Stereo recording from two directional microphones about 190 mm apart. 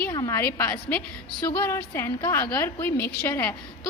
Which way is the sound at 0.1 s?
15° left (ahead or behind).